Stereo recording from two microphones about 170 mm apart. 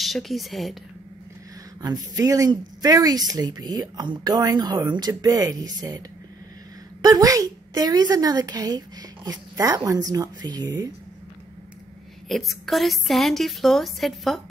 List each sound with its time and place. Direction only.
0.0 s a woman's voice: centre (ahead or behind)
1.8 s speech: 20° right (ahead or behind)
12.3 s a woman's voice: centre (ahead or behind)